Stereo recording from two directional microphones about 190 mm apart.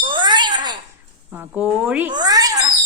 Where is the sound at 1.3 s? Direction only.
10° right (ahead or behind).